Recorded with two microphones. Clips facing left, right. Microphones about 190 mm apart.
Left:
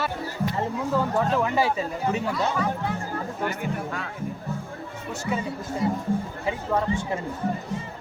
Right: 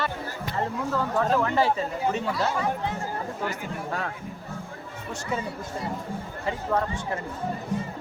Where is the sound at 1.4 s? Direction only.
10° left (ahead or behind).